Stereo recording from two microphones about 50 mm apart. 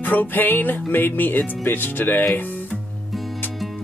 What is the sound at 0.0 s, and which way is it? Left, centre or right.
Speech, left.